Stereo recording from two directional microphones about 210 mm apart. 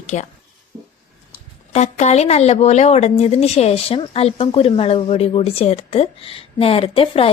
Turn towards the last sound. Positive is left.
turn(degrees=25)  # may be behind; listen again after turning